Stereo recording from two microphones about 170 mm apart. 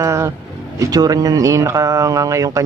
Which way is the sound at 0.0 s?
15° right (ahead or behind).